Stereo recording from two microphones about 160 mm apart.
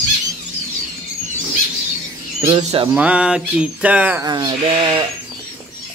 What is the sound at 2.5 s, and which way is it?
Speech, 40° right (ahead or behind).